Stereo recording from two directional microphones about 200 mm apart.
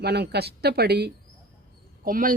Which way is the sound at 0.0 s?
55° right (ahead or behind).